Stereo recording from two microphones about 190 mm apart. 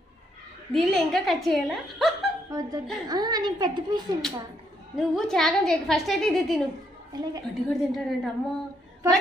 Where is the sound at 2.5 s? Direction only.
15° right (ahead or behind).